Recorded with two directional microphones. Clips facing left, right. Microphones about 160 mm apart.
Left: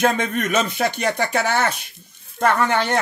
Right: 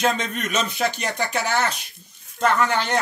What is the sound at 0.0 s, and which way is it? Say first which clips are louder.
Speech: left 4 dB; 55° left (ahead or behind).